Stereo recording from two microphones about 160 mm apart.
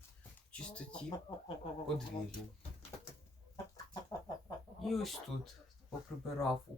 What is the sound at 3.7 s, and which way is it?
Chicken, 25° left (ahead or behind).